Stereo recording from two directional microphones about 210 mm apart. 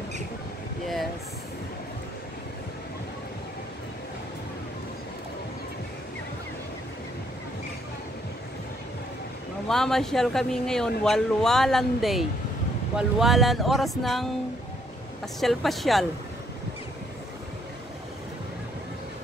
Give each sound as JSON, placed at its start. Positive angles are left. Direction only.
{"t": 9.7, "sound": "speech", "side_deg": 0}
{"t": 15.4, "sound": "speech", "side_deg": 0}